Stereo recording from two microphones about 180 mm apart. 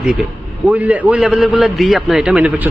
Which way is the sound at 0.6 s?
10° right (ahead or behind).